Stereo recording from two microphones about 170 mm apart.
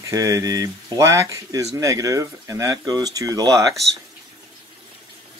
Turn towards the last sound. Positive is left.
turn(degrees=-20)  # may be behind; listen again after turning